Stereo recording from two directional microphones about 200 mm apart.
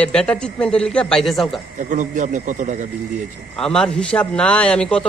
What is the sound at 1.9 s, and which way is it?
Speech, 40° right (ahead or behind).